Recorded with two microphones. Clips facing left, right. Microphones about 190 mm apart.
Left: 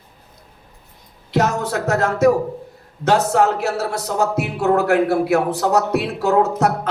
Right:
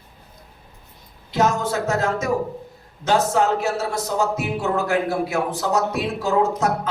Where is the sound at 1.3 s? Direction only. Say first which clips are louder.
Left 1 dB; 65° left (ahead or behind).